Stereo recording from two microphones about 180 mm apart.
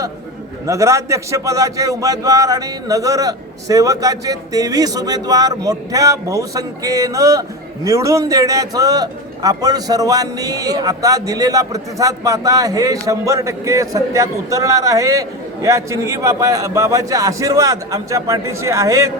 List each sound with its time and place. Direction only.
0.7 s a man's voice: 15° right (ahead or behind)